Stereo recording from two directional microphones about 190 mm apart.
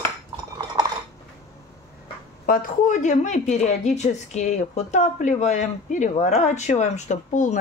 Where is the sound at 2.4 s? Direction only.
45° left (ahead or behind).